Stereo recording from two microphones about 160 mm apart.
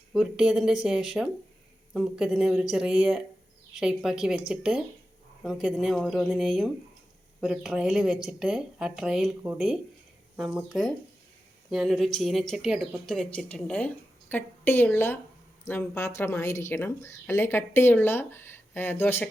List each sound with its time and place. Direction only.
0.1 s a woman's voice: centre (ahead or behind)
10.3 s a woman's voice: centre (ahead or behind)